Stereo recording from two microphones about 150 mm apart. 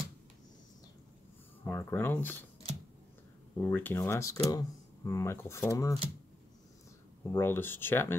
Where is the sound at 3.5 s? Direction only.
10° left (ahead or behind).